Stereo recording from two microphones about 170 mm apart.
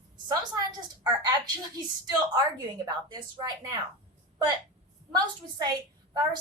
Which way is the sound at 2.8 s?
25° right (ahead or behind).